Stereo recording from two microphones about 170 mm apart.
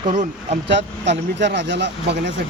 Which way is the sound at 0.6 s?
90° right.